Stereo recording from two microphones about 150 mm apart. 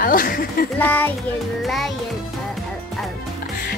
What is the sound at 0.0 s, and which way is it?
Speech, 70° left (ahead or behind).